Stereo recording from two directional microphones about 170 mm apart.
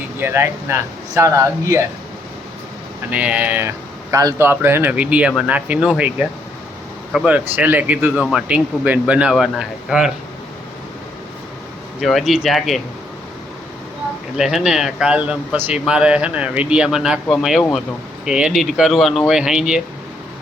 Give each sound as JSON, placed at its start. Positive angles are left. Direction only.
{"t": 0.2, "sound": "speech", "side_deg": -15}
{"t": 3.1, "sound": "speech", "side_deg": -10}
{"t": 11.9, "sound": "speech", "side_deg": 0}
{"t": 14.3, "sound": "speech", "side_deg": -5}